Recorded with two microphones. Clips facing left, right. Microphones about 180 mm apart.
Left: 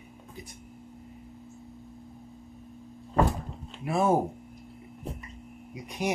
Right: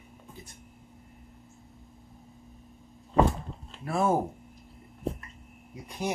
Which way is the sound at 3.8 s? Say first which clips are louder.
Left 2 dB; 15° left (ahead or behind).